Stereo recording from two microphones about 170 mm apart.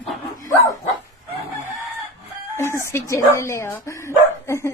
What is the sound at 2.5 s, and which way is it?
A woman's voice, 15° left (ahead or behind).